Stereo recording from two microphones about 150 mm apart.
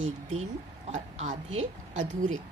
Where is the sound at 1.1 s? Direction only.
55° right (ahead or behind).